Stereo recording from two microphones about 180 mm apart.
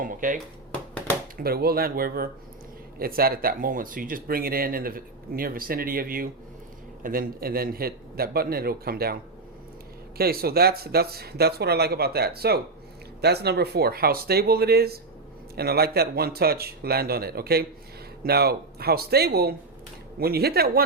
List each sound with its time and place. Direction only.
0.0 s speech: 45° right (ahead or behind)
1.4 s speech: 60° right (ahead or behind)
10.2 s speech: 60° right (ahead or behind)